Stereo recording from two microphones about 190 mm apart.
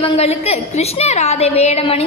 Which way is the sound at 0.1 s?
35° left (ahead or behind).